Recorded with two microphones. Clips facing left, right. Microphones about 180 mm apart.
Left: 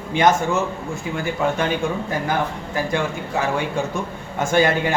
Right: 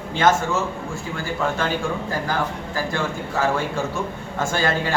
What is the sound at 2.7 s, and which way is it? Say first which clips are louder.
A man's voice: left 4 dB; 15° left (ahead or behind).